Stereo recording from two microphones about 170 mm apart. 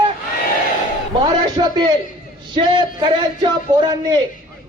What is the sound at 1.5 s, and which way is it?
A man's voice, 25° right (ahead or behind).